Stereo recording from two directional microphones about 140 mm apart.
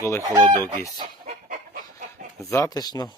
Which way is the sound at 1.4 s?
80° right.